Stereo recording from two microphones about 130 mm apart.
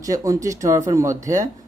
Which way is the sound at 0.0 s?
25° right (ahead or behind).